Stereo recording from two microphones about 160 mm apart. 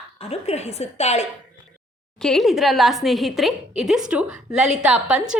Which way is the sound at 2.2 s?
Centre (ahead or behind).